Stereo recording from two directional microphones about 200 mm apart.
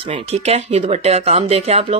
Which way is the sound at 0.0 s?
30° right (ahead or behind).